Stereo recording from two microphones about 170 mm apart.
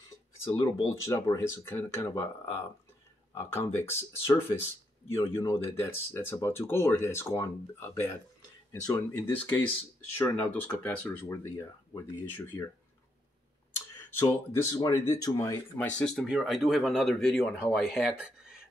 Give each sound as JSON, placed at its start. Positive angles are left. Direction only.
{"t": 0.6, "sound": "speech", "side_deg": 20}
{"t": 14.2, "sound": "speech", "side_deg": 20}